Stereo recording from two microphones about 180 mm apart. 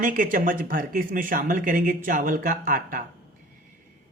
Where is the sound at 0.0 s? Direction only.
50° right (ahead or behind).